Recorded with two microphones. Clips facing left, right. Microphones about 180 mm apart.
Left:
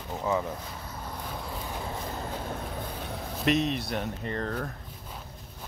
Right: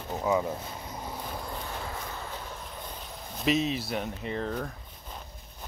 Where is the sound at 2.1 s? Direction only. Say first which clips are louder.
Left 5 dB; 55° left (ahead or behind); by 3.3 s 70° left (ahead or behind).